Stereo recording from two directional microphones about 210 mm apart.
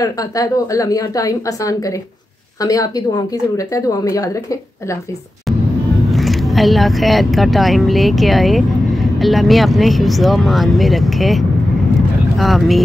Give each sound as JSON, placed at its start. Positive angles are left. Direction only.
{"t": 0.0, "sound": "a woman's voice", "side_deg": 15}
{"t": 6.0, "sound": "speech", "side_deg": 0}